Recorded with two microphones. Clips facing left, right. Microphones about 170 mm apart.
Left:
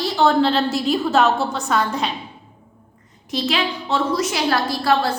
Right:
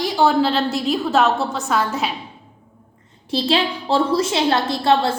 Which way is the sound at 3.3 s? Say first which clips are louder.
Right 3 dB; 30° right (ahead or behind).